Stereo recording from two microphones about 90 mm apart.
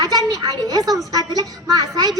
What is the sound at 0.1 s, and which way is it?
A child's voice, 45° right (ahead or behind).